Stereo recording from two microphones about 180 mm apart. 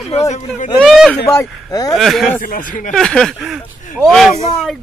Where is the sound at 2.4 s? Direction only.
50° left (ahead or behind).